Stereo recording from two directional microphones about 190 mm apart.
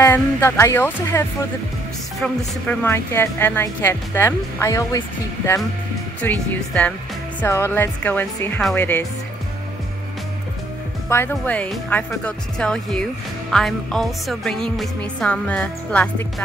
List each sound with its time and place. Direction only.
0.0 s speech: 10° left (ahead or behind)
2.2 s speech: 10° left (ahead or behind)
6.2 s speech: 5° left (ahead or behind)
11.1 s speech: 10° left (ahead or behind)
13.5 s music: centre (ahead or behind)